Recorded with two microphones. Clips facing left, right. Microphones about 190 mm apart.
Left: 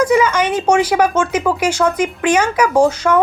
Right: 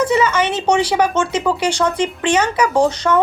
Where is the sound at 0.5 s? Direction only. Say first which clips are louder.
Left 2 dB; 10° left (ahead or behind).